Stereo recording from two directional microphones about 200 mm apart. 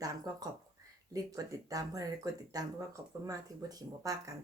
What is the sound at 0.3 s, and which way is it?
Speech, 20° right (ahead or behind).